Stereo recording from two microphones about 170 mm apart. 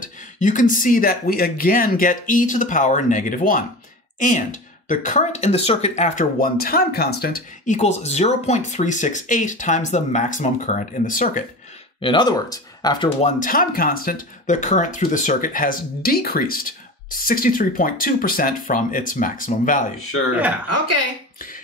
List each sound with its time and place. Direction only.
0.0 s speech: 50° left (ahead or behind)
6.3 s speech: 60° left (ahead or behind)
12.0 s speech: 30° left (ahead or behind)
13.2 s speech: 55° left (ahead or behind)